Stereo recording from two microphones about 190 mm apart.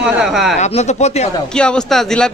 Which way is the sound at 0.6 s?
35° left (ahead or behind).